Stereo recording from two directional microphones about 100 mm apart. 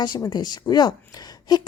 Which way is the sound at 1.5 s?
40° left (ahead or behind).